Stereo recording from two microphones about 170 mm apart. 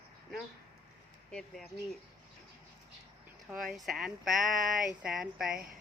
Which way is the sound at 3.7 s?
Centre (ahead or behind).